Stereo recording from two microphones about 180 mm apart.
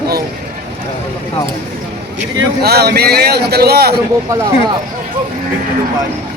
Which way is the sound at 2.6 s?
60° right (ahead or behind).